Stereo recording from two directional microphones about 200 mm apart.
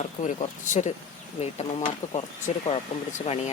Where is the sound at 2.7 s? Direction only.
30° left (ahead or behind).